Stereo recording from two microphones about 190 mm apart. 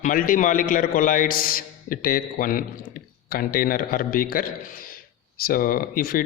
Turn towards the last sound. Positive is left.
turn(degrees=50)  # may be behind; listen again after turning